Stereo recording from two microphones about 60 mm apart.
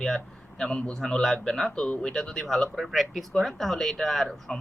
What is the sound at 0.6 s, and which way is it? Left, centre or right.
Speech, centre.